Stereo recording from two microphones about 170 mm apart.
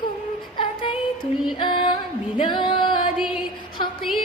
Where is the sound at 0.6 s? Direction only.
30° left (ahead or behind).